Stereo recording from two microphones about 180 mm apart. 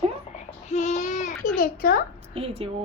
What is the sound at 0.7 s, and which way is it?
Babbling, 40° left (ahead or behind).